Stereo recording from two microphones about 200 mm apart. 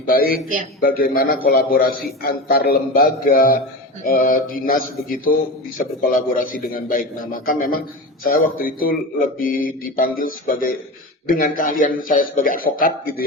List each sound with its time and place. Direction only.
0.1 s a man's voice: 45° left (ahead or behind)
0.4 s a man's voice: 40° right (ahead or behind)
0.8 s a man's voice: 45° left (ahead or behind)